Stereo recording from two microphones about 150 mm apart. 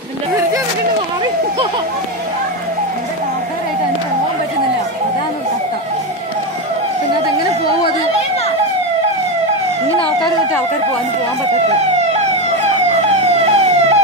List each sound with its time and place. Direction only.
13.4 s emergency vehicle: 40° right (ahead or behind)